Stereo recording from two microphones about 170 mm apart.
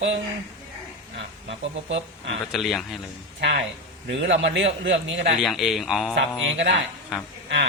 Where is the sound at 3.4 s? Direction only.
90° right.